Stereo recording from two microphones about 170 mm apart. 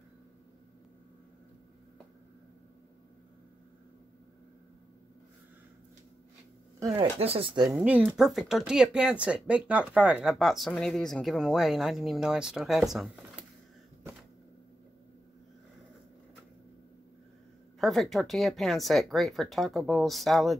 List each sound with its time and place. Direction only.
7.0 s speech: 35° right (ahead or behind)
7.7 s speech: 10° right (ahead or behind)
17.7 s speech: centre (ahead or behind)